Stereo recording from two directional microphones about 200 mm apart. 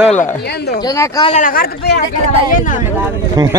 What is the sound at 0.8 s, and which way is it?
Speech, 20° left (ahead or behind).